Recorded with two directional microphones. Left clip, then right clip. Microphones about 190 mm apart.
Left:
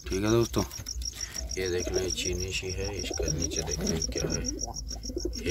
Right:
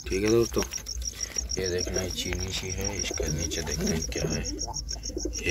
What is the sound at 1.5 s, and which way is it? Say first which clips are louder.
Speech: left 1 dB; 15° left (ahead or behind).